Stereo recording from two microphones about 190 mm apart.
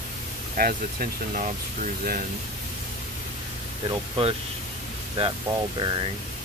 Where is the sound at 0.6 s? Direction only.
45° right (ahead or behind).